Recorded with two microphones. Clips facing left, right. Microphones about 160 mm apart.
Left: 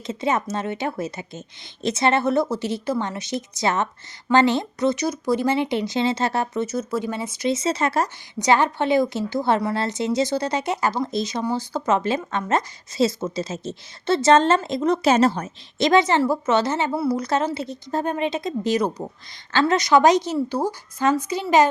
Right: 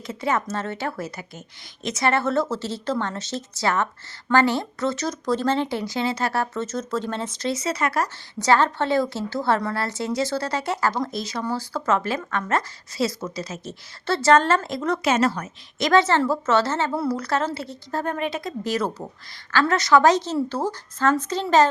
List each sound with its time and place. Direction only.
0.1 s speech: 20° left (ahead or behind)
7.5 s speech: 25° left (ahead or behind)
15.0 s speech: 30° left (ahead or behind)
16.0 s speech: 15° left (ahead or behind)
17.2 s speech: 20° left (ahead or behind)